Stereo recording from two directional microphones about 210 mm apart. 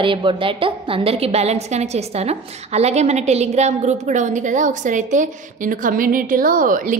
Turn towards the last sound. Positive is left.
turn(degrees=-40)  # may be behind; listen again after turning